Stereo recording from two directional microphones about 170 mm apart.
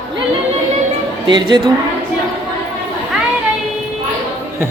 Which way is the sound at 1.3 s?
25° right (ahead or behind).